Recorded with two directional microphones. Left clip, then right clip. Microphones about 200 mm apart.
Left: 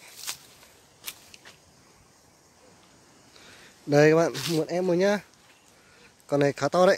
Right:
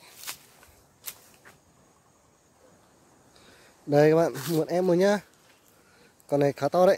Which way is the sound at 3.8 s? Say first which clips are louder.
Left 1 dB; centre (ahead or behind).